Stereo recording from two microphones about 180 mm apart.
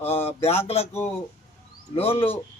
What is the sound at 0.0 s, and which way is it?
Speech, 35° left (ahead or behind).